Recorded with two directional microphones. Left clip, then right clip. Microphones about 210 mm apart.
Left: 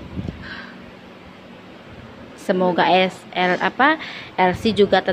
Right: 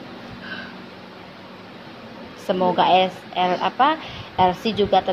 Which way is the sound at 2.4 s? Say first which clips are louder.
Left 1 dB; 35° left (ahead or behind).